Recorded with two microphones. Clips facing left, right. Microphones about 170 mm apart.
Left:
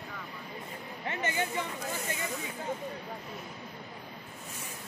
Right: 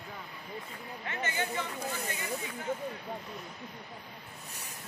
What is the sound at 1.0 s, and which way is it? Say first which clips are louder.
Chatter: left 2 dB; 25° left (ahead or behind).